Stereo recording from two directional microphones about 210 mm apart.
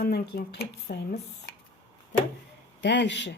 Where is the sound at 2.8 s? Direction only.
55° left (ahead or behind).